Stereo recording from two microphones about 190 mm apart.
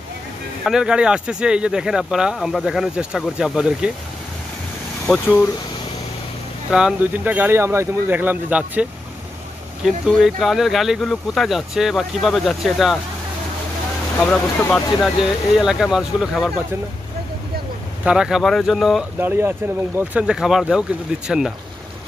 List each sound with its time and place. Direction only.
0.7 s speech: 5° right (ahead or behind)
5.0 s speech: 5° left (ahead or behind)
6.7 s speech: 5° right (ahead or behind)
9.8 s speech: centre (ahead or behind)
14.2 s speech: 5° left (ahead or behind)
18.0 s speech: 5° right (ahead or behind)
19.1 s speech: 10° right (ahead or behind)